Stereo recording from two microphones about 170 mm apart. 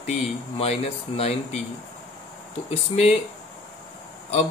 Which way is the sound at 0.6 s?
35° left (ahead or behind).